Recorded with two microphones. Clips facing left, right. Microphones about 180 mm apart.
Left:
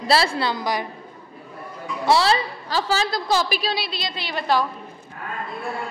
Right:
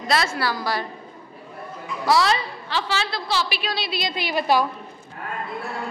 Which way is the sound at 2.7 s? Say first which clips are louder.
Left 3 dB; 40° left (ahead or behind).